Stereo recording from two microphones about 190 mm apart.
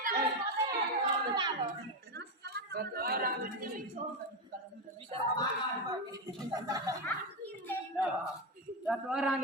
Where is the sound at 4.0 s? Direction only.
40° right (ahead or behind).